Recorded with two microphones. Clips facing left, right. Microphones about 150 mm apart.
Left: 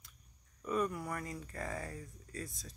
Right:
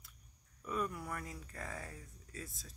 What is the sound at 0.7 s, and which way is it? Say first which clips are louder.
Speech: left 4 dB; centre (ahead or behind).